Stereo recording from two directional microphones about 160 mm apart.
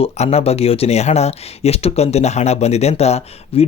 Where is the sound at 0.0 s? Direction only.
40° left (ahead or behind).